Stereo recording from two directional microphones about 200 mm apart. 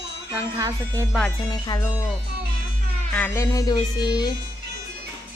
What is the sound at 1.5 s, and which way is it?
Speech, 20° left (ahead or behind).